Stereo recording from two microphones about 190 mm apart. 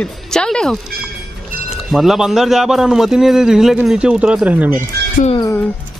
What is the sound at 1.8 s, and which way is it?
A man's voice, centre (ahead or behind).